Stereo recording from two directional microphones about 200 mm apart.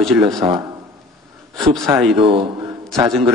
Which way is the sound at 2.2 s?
25° right (ahead or behind).